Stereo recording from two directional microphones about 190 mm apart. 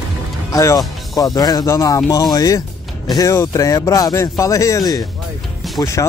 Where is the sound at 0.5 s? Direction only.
15° left (ahead or behind).